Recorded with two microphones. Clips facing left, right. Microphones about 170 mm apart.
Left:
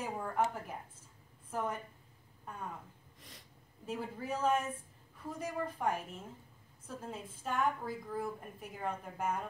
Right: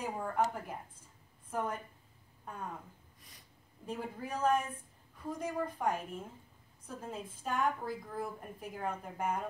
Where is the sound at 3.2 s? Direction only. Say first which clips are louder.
Left 5 dB; 75° left (ahead or behind).